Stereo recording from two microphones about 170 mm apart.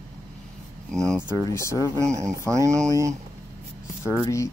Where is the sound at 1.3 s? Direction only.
15° left (ahead or behind).